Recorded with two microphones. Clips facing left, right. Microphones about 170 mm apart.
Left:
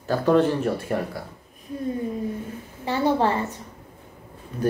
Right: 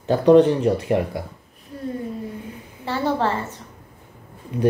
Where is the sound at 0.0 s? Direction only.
20° right (ahead or behind).